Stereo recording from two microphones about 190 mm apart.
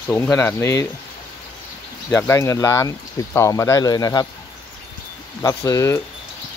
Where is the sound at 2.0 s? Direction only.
15° left (ahead or behind).